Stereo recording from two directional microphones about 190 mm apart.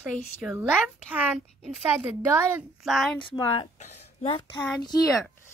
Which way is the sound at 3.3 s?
25° left (ahead or behind).